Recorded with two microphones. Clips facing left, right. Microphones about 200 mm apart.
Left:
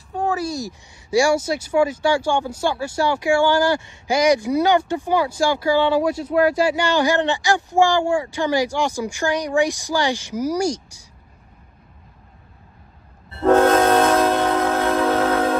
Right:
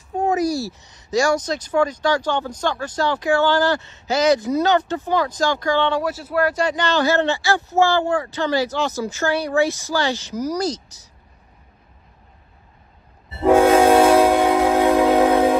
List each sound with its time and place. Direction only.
0.3 s speech: 30° left (ahead or behind)
0.6 s speech: 15° left (ahead or behind)
13.3 s train: 5° right (ahead or behind)